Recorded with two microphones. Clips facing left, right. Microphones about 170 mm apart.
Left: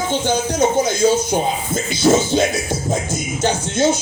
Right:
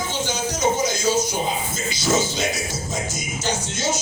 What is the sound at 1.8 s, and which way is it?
Speech, 55° left (ahead or behind).